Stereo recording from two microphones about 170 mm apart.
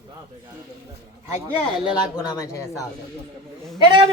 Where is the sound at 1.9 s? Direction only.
20° left (ahead or behind).